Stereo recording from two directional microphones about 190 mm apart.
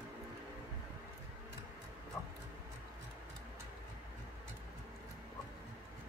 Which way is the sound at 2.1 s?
15° left (ahead or behind).